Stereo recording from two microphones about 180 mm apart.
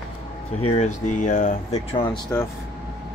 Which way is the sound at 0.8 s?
45° left (ahead or behind).